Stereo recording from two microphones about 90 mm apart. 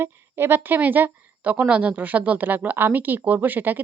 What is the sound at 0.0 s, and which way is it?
Speech, 25° right (ahead or behind).